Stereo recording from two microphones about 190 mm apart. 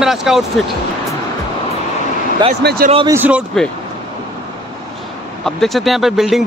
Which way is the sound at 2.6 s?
60° right (ahead or behind).